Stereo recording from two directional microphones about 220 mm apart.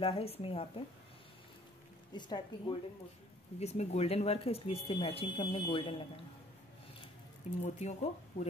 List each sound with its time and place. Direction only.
0.0 s speech: 25° left (ahead or behind)
2.1 s speech: 20° left (ahead or behind)
7.6 s speech: 30° left (ahead or behind)